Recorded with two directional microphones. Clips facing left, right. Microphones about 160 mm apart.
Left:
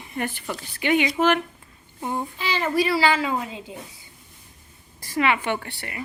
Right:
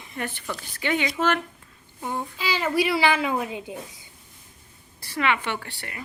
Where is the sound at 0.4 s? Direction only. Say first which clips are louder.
Left 3 dB; 20° left (ahead or behind).